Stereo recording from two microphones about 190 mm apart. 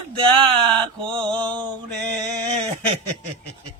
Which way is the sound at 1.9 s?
5° left (ahead or behind).